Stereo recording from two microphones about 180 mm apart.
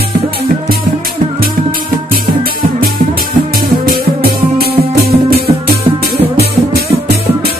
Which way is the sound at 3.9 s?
55° right (ahead or behind).